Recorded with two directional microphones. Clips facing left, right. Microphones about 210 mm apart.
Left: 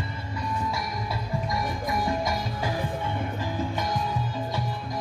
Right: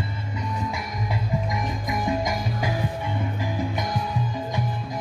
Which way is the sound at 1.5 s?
15° right (ahead or behind).